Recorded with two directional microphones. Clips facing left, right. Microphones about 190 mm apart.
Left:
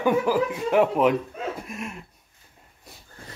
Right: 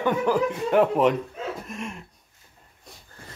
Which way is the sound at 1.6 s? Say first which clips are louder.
Even; 5° left (ahead or behind).